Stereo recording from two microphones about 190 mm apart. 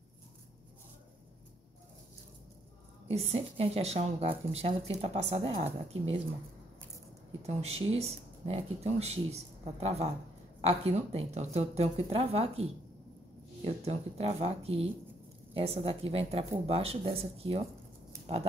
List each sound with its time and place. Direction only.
3.1 s speech: 30° right (ahead or behind)
7.4 s speech: 35° right (ahead or behind)
13.7 s speech: 30° right (ahead or behind)